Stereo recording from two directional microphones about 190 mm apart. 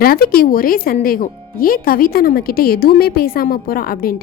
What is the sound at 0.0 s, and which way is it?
Speech, 50° left (ahead or behind).